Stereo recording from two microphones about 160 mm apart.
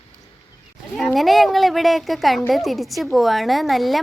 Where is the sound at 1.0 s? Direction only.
Centre (ahead or behind).